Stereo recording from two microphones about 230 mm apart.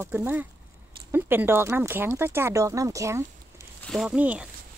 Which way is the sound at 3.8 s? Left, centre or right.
Centre.